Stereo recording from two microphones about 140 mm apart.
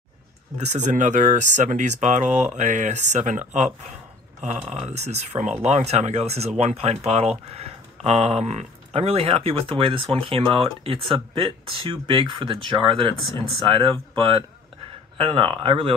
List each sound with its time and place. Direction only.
0.6 s speech: 55° right (ahead or behind); by 15.9 s 40° right (ahead or behind)